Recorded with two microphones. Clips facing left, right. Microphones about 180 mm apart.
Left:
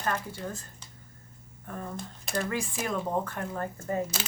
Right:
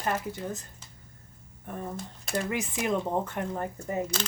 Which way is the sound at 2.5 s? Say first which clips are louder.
Right 3 dB; 20° right (ahead or behind).